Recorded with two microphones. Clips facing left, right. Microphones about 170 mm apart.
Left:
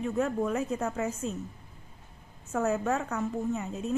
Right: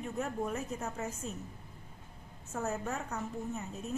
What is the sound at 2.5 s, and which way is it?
A woman's voice, 90° left.